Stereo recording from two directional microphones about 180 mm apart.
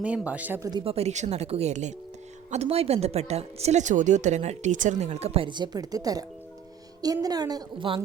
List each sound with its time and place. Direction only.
0.0 s speech: 10° right (ahead or behind)
0.7 s a woman's voice: 30° right (ahead or behind)